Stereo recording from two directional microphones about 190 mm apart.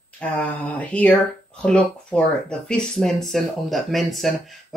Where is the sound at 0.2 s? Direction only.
5° left (ahead or behind).